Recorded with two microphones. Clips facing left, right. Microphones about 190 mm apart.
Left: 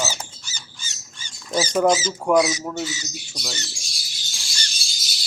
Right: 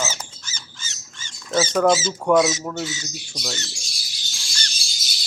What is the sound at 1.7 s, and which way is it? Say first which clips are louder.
Speech: even; 10° left (ahead or behind).